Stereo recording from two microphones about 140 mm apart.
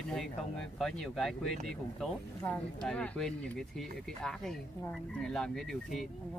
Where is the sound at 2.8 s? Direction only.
5° left (ahead or behind).